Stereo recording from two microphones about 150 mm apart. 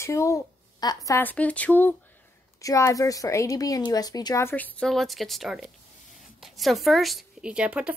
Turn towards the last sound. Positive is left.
turn(degrees=-10)  # may be behind; listen again after turning